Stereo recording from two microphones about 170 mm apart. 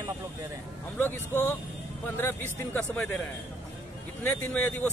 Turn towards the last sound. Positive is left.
turn(degrees=10)  # may be behind; listen again after turning